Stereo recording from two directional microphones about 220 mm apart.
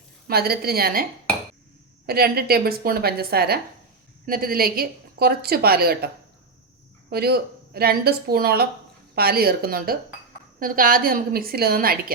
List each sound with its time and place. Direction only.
0.3 s a woman's voice: 45° right (ahead or behind)
2.0 s a woman's voice: 45° right (ahead or behind)
7.1 s a woman's voice: 45° right (ahead or behind)